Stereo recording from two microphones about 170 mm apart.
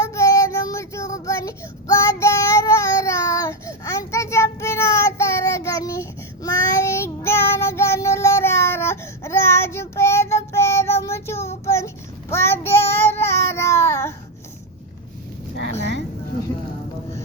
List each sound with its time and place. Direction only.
0.0 s child singing: 15° left (ahead or behind)
12.8 s child singing: 35° left (ahead or behind)
13.1 s baby cry: 15° left (ahead or behind)